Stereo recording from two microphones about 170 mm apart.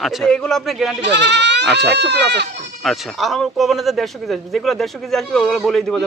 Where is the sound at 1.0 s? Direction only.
90° right.